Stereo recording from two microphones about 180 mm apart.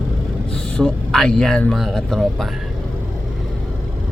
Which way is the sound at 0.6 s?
5° left (ahead or behind).